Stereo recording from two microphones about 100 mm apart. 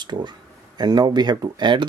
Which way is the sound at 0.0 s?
50° right (ahead or behind).